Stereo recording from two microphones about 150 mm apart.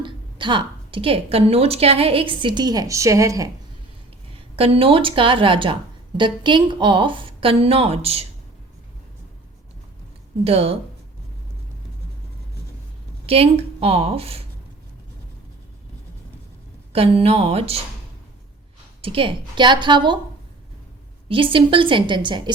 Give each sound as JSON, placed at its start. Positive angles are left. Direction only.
{"t": 0.0, "sound": "a woman's voice", "side_deg": -35}
{"t": 4.4, "sound": "a woman's voice", "side_deg": -40}
{"t": 10.4, "sound": "a woman's voice", "side_deg": -40}
{"t": 13.2, "sound": "a woman's voice", "side_deg": -40}
{"t": 16.9, "sound": "a woman's voice", "side_deg": -40}
{"t": 19.0, "sound": "a woman's voice", "side_deg": -35}
{"t": 21.2, "sound": "a woman's voice", "side_deg": -35}